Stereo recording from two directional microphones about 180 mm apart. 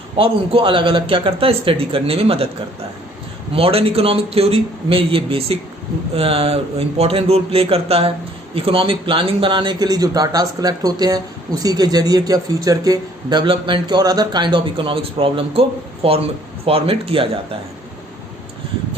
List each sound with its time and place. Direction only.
0.2 s a man's voice: 30° right (ahead or behind)
3.5 s a man's voice: 30° right (ahead or behind)